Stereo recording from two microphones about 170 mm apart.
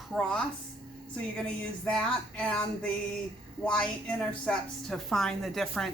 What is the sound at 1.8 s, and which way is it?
A woman's voice, 5° left (ahead or behind).